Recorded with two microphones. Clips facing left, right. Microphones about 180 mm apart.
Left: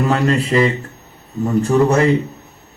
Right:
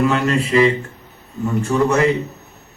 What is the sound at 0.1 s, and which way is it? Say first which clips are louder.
A man's voice: left 1 dB; 35° left (ahead or behind).